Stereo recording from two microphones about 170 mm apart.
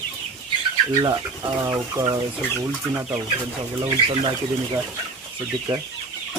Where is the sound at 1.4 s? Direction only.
20° right (ahead or behind).